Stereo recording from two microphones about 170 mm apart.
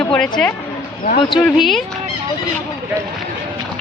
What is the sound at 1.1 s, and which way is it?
Speech, 25° left (ahead or behind).